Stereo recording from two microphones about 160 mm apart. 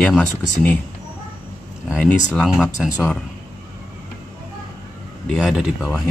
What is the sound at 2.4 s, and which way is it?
Speech, centre (ahead or behind).